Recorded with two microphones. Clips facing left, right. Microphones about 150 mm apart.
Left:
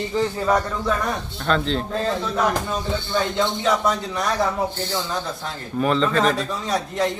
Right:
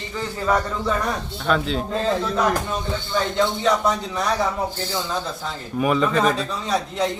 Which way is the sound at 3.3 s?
5° left (ahead or behind).